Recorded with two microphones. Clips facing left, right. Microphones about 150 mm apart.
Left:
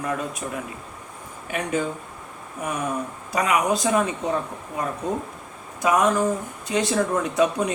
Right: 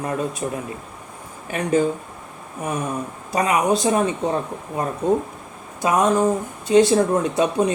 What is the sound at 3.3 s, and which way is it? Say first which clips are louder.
Speech: right 3 dB; 25° right (ahead or behind).